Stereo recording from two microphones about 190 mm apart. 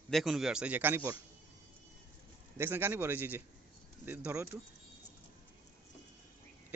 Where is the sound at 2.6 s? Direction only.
10° right (ahead or behind).